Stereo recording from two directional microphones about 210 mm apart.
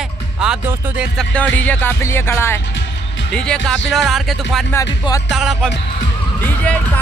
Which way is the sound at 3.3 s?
5° left (ahead or behind).